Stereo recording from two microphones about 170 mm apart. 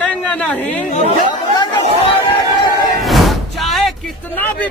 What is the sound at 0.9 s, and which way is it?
Speech, 40° left (ahead or behind).